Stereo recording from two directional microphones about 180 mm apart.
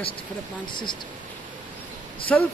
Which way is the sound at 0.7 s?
25° left (ahead or behind).